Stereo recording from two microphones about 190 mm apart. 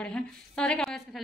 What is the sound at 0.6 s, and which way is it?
Speech, 5° left (ahead or behind).